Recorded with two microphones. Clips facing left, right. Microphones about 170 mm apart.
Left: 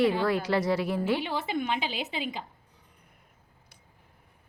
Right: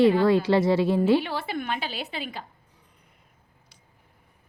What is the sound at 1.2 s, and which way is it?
A woman's voice, 15° left (ahead or behind).